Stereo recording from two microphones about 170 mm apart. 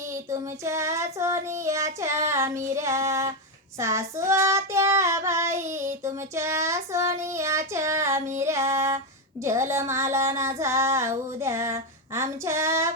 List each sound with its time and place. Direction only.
0.1 s child singing: 15° right (ahead or behind)